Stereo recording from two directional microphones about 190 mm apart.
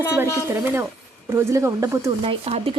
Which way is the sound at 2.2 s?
30° right (ahead or behind).